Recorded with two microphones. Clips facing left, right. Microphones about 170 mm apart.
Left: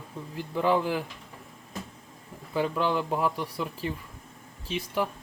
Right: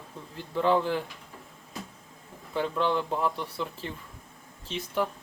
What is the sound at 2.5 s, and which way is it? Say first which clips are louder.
Speech: left 1 dB; 5° left (ahead or behind).